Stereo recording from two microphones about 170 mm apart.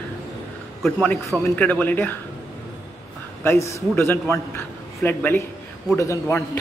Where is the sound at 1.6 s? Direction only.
10° left (ahead or behind).